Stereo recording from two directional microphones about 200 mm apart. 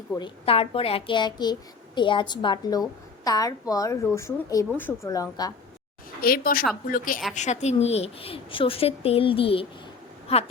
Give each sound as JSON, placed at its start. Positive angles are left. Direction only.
{"t": 0.2, "sound": "a woman's voice", "side_deg": 30}
{"t": 6.2, "sound": "a woman's voice", "side_deg": 45}